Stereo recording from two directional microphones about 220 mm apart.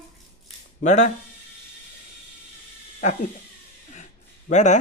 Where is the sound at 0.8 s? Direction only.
30° left (ahead or behind).